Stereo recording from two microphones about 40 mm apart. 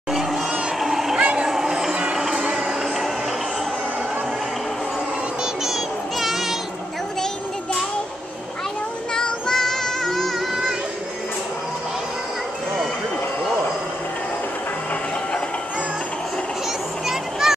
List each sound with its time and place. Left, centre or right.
0.1 s crowd: centre
1.4 s a sound: centre
2.1 s music: centre
5.7 s music: centre
9.1 s child singing: centre
17.1 s a sound: centre